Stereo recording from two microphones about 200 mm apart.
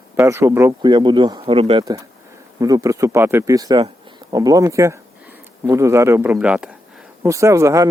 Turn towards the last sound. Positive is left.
turn(degrees=-15)  # may be behind; listen again after turning